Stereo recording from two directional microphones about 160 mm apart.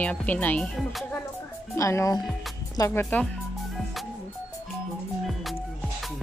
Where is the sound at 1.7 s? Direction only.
20° left (ahead or behind).